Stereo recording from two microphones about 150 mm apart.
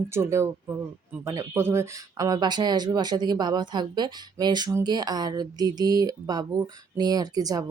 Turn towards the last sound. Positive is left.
turn(degrees=-25)  # may be behind; listen again after turning